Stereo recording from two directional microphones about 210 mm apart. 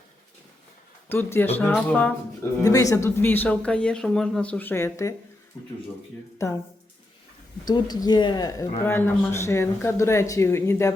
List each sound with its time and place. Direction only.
1.0 s speech: 10° left (ahead or behind)
6.4 s speech: 15° left (ahead or behind)
7.7 s speech: 20° left (ahead or behind)